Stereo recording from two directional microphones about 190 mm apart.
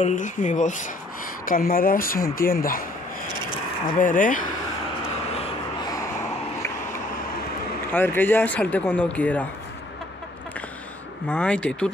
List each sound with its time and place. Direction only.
0.0 s speech: 40° left (ahead or behind)
4.0 s speech: 45° left (ahead or behind)
7.9 s speech: 10° left (ahead or behind)
11.2 s speech: 5° left (ahead or behind)